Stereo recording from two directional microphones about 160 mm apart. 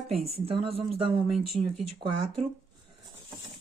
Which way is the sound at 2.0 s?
35° right (ahead or behind).